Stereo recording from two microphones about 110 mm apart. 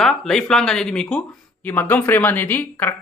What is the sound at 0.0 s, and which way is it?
Speech, 5° left (ahead or behind).